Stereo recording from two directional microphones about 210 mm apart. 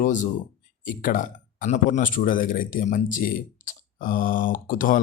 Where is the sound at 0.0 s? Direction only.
35° left (ahead or behind).